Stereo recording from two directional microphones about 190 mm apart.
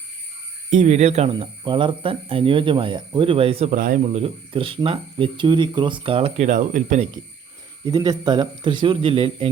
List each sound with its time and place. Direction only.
0.7 s speech: 40° right (ahead or behind)
3.8 s speech: 45° right (ahead or behind)
7.9 s speech: 20° right (ahead or behind)